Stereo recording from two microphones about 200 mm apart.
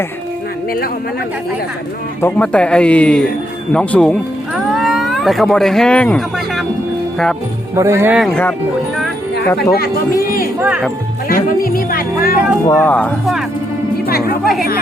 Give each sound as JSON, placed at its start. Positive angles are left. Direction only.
{"t": 2.2, "sound": "speech", "side_deg": 5}
{"t": 4.5, "sound": "cat", "side_deg": 0}
{"t": 7.8, "sound": "speech", "side_deg": -15}
{"t": 8.2, "sound": "speech", "side_deg": 5}
{"t": 10.6, "sound": "speech", "side_deg": -5}
{"t": 11.3, "sound": "speech", "side_deg": 45}
{"t": 12.6, "sound": "speech", "side_deg": 10}
{"t": 14.4, "sound": "speech", "side_deg": 0}